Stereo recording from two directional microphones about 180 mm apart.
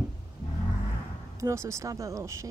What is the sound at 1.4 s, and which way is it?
Speech, 15° right (ahead or behind).